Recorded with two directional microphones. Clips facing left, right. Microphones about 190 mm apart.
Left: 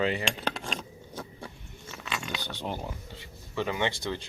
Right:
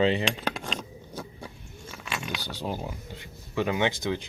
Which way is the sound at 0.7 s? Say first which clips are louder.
Right 2 dB; 10° right (ahead or behind).